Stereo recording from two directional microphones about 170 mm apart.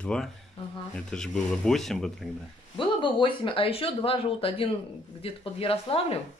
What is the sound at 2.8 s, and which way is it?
Speech, 30° left (ahead or behind).